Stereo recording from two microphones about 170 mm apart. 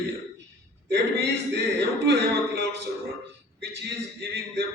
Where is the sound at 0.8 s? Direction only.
85° right.